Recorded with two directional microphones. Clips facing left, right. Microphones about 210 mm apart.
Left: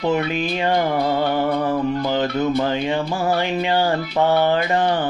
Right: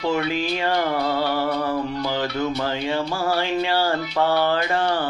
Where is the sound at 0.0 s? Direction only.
20° left (ahead or behind).